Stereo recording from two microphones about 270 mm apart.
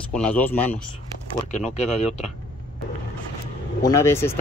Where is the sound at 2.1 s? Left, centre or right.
Centre.